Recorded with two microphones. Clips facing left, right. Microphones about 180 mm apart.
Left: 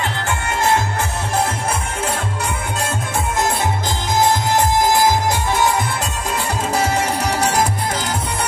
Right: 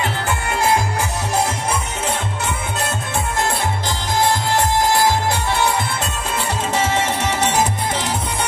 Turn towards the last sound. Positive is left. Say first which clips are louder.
# left 1 dB
turn(degrees=10)  # may be behind; listen again after turning